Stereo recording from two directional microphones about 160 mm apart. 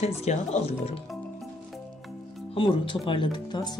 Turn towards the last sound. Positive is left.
turn(degrees=30)  # may be behind; listen again after turning